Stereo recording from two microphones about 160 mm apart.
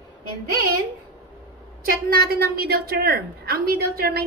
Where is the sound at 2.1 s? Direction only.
75° right (ahead or behind).